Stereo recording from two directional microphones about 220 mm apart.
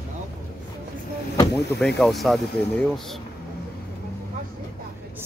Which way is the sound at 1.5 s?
Centre (ahead or behind).